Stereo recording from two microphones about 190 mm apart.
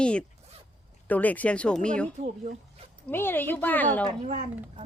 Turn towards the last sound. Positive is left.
turn(degrees=-40)  # may be behind; listen again after turning